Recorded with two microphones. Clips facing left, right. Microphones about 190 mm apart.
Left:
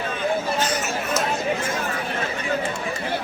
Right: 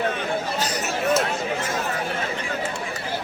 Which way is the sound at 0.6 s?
35° right (ahead or behind).